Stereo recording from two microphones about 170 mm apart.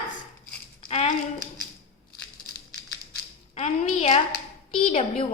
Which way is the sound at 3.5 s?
40° left (ahead or behind).